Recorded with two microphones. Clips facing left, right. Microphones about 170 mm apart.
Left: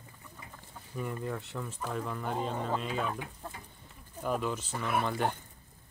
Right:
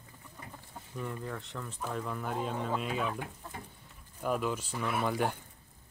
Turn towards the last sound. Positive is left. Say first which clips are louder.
# right 1 dB
turn(degrees=-5)  # may be behind; listen again after turning